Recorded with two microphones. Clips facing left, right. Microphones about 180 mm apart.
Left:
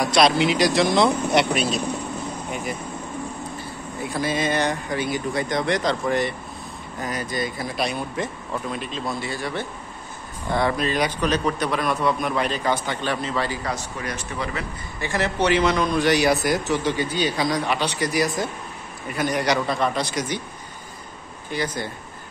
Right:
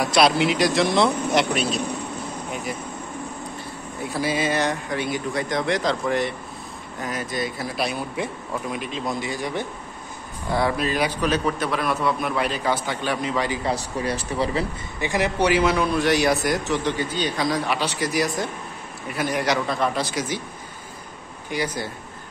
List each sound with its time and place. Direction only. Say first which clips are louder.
0.0 s a man's voice: even; 5° right (ahead or behind)
4.0 s a man's voice: even; 5° right (ahead or behind)
10.5 s a man's voice: even; 5° right (ahead or behind)
13.7 s speech: right 4 dB; 35° right (ahead or behind)
15.0 s a man's voice: right 1 dB; 15° right (ahead or behind)
21.5 s a man's voice: even; 10° right (ahead or behind)